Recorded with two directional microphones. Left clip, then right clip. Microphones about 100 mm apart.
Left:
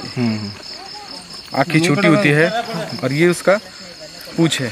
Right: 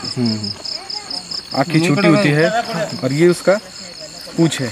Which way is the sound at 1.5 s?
15° left (ahead or behind).